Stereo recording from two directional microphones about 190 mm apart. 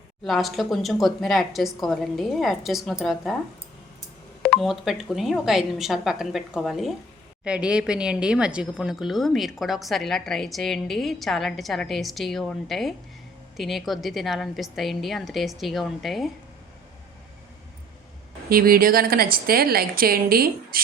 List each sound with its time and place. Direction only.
0.3 s speech: centre (ahead or behind)
4.4 s speech: centre (ahead or behind)
18.4 s speech: 50° right (ahead or behind)